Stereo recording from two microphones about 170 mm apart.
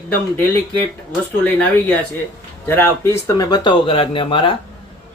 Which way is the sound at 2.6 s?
15° left (ahead or behind).